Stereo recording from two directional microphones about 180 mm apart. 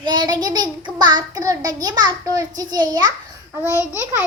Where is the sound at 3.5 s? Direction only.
10° right (ahead or behind).